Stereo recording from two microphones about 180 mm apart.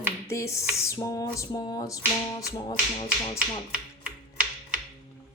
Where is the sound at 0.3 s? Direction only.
15° left (ahead or behind).